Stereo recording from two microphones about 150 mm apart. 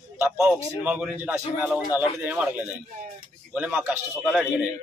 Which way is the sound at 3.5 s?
10° right (ahead or behind).